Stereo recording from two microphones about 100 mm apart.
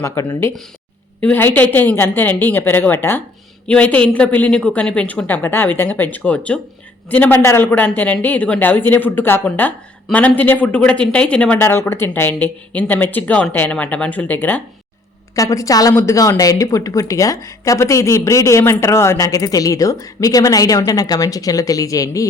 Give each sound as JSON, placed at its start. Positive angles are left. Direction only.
{"t": 0.0, "sound": "a woman's voice", "side_deg": 25}
{"t": 15.4, "sound": "speech", "side_deg": 35}